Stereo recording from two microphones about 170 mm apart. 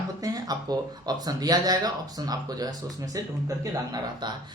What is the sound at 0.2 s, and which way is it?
Speech, 20° right (ahead or behind).